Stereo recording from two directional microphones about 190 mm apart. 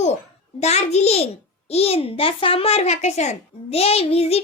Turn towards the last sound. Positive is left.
turn(degrees=30)  # may be behind; listen again after turning